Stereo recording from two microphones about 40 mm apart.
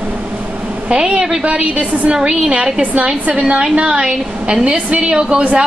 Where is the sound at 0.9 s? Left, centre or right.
Right.